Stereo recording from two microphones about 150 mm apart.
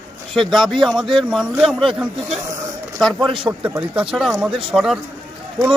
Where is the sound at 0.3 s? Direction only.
Centre (ahead or behind).